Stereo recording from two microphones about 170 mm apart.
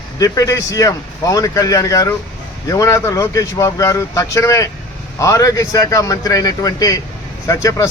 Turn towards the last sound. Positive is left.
turn(degrees=20)  # may be behind; listen again after turning